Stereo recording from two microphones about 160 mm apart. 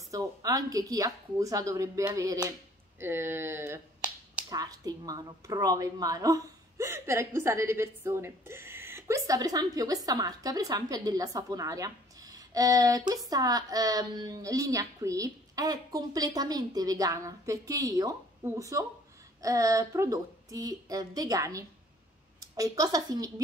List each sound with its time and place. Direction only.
0.1 s a woman's voice: 20° right (ahead or behind)
4.5 s a woman's voice: 25° right (ahead or behind)